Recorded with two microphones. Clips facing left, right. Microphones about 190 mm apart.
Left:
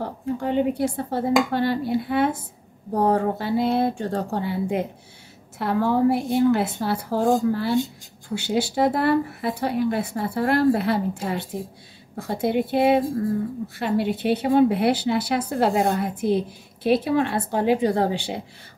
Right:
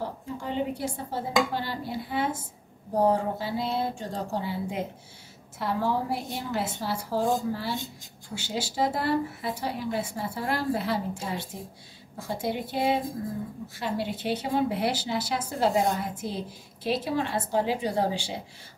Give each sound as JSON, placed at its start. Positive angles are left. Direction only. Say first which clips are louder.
{"t": 0.4, "sound": "a woman's voice", "louder": "left 8 dB", "side_deg": 60}